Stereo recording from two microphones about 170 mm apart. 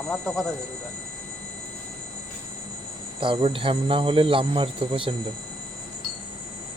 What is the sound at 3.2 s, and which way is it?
Speech, 30° right (ahead or behind).